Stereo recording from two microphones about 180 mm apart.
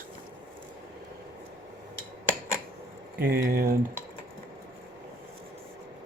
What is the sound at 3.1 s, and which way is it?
Speech, 55° right (ahead or behind).